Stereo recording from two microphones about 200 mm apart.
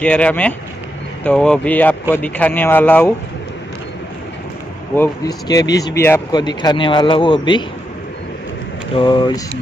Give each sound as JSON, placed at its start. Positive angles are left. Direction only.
{"t": 0.0, "sound": "speech", "side_deg": 5}
{"t": 4.9, "sound": "a man's voice", "side_deg": 15}
{"t": 8.9, "sound": "a man's voice", "side_deg": 25}